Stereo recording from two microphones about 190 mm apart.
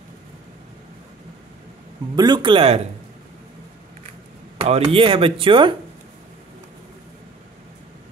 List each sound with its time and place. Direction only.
2.1 s speech: 25° right (ahead or behind)
4.6 s speech: 30° right (ahead or behind)